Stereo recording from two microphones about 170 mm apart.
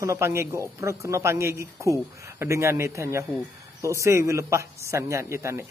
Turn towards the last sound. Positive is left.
turn(degrees=-15)  # may be behind; listen again after turning